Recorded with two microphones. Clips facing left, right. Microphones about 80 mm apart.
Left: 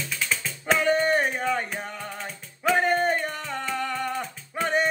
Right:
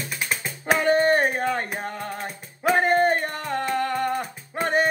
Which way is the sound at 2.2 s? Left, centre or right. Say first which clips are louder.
Right 1 dB; right.